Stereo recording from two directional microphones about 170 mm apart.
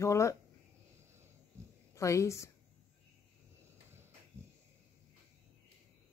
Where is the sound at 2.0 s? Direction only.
15° left (ahead or behind).